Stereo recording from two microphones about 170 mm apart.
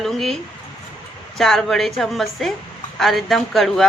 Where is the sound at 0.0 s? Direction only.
Centre (ahead or behind).